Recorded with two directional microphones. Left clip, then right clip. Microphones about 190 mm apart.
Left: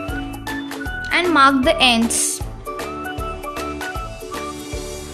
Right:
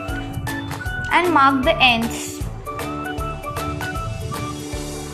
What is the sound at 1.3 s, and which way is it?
Speech, 35° left (ahead or behind).